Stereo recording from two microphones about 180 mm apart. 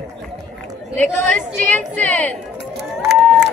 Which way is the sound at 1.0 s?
10° left (ahead or behind).